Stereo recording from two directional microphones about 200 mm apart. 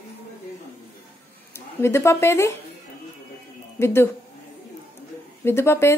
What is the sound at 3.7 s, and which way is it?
Speech, 10° left (ahead or behind).